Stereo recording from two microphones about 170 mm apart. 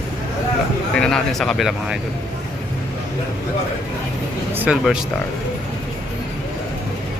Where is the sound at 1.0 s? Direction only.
5° left (ahead or behind).